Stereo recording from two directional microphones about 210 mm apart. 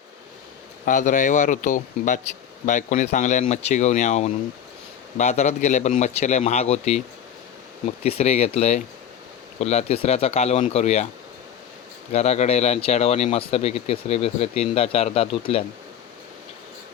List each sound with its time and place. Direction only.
0.9 s a man's voice: 40° left (ahead or behind)
12.1 s speech: 30° left (ahead or behind)